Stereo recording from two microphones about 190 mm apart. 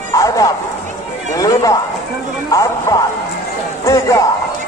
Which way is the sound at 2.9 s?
20° left (ahead or behind).